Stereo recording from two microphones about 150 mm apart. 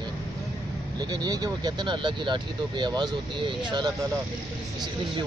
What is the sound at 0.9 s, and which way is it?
Speech, 25° right (ahead or behind).